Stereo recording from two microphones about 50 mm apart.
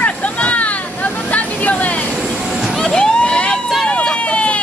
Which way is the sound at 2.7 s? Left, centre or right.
Centre.